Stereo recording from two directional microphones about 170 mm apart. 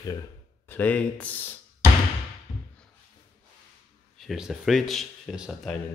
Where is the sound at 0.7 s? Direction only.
10° left (ahead or behind).